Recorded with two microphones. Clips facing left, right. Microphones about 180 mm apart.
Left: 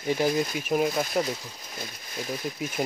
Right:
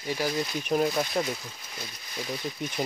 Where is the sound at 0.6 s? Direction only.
5° left (ahead or behind).